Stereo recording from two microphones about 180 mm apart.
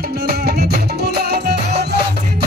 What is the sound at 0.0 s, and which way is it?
Music, 60° right (ahead or behind).